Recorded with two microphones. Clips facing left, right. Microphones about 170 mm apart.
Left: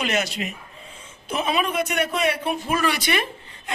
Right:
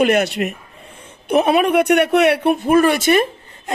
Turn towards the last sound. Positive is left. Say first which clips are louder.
# right 9 dB
turn(degrees=-45)  # may be behind; listen again after turning